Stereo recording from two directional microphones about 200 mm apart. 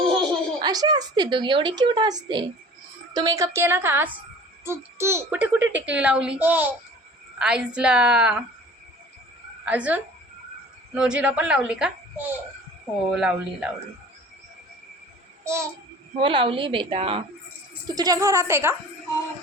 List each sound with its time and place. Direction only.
0.6 s a woman's voice: 20° right (ahead or behind)
9.6 s a woman's voice: 5° right (ahead or behind)
15.4 s a child's voice: 15° right (ahead or behind)
16.1 s a woman's voice: 25° right (ahead or behind)